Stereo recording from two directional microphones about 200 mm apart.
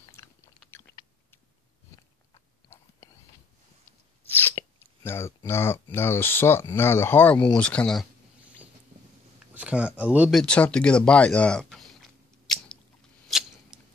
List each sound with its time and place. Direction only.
0.1 s biting: 15° left (ahead or behind)
4.5 s speech: 10° left (ahead or behind)
9.5 s speech: 5° right (ahead or behind)
10.4 s speech: 5° left (ahead or behind)
12.5 s biting: centre (ahead or behind)
13.3 s a sound: centre (ahead or behind)